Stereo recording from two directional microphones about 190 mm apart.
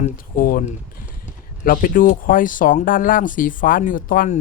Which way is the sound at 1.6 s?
45° left (ahead or behind).